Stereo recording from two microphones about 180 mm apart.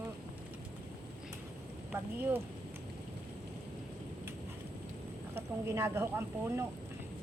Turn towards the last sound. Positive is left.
turn(degrees=-15)  # may be behind; listen again after turning